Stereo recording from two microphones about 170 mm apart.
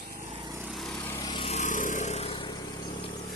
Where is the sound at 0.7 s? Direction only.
Centre (ahead or behind).